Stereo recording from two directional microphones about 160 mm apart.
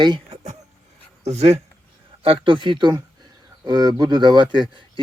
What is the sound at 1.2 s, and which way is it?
Speech, 45° right (ahead or behind).